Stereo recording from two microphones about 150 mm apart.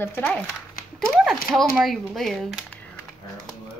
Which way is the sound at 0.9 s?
5° left (ahead or behind).